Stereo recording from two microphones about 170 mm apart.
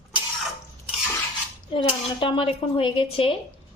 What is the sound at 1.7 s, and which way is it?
A woman's voice, 30° left (ahead or behind).